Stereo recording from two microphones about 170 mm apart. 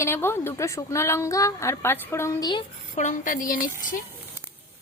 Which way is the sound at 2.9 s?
45° left (ahead or behind).